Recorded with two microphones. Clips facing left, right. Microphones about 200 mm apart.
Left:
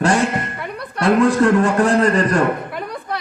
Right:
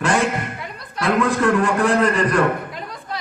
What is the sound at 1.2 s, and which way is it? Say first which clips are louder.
Speech: left 3 dB; 40° left (ahead or behind).